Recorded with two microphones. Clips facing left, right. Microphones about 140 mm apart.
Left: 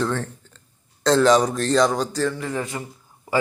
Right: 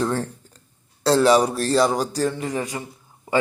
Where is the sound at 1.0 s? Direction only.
10° right (ahead or behind).